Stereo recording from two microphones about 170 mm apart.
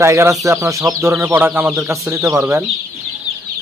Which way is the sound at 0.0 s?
15° right (ahead or behind).